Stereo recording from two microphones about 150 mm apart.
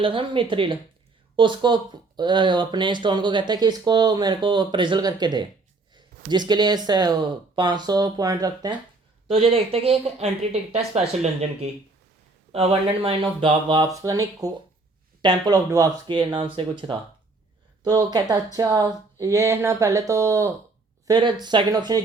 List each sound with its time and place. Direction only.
0.0 s speech: 35° right (ahead or behind)
9.2 s speech: 40° right (ahead or behind); by 15.9 s 25° right (ahead or behind)
16.0 s speech: 35° right (ahead or behind)